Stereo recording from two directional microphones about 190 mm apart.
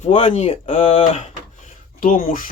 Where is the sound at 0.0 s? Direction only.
35° left (ahead or behind).